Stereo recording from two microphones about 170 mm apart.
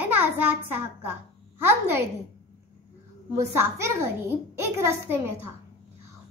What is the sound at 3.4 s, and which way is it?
A child's voice, 15° right (ahead or behind).